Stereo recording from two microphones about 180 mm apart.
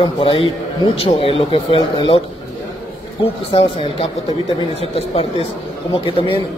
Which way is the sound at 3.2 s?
30° left (ahead or behind).